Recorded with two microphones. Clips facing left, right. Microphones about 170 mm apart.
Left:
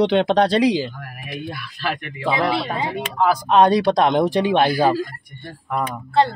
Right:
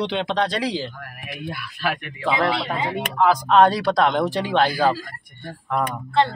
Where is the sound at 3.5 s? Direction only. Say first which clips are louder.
Left 4 dB; 20° left (ahead or behind).